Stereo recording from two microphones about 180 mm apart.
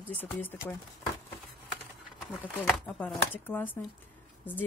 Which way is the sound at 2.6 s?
Centre (ahead or behind).